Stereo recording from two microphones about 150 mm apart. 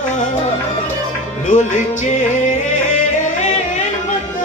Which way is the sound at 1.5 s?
50° left (ahead or behind).